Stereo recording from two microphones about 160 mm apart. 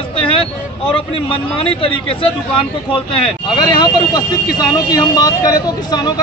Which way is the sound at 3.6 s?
30° left (ahead or behind).